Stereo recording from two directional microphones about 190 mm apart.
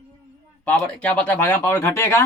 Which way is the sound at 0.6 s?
5° left (ahead or behind).